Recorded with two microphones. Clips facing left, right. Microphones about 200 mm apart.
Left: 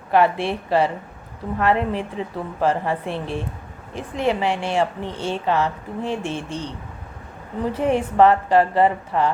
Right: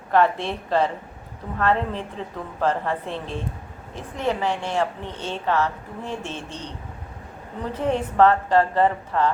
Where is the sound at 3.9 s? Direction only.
90° left.